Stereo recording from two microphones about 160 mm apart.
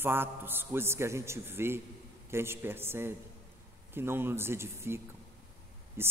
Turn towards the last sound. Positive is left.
turn(degrees=-15)  # may be behind; listen again after turning